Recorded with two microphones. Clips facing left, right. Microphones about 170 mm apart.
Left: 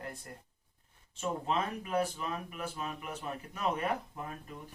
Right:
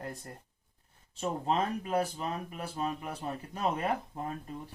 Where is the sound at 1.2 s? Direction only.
35° right (ahead or behind).